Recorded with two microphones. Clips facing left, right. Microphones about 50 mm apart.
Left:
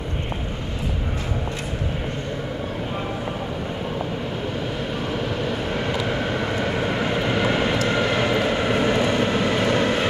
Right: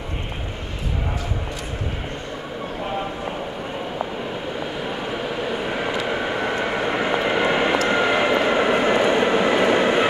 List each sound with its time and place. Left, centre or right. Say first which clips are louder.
5.1 s vehicle: even; centre